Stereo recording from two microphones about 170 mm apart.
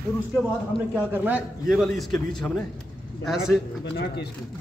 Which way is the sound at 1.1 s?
10° right (ahead or behind).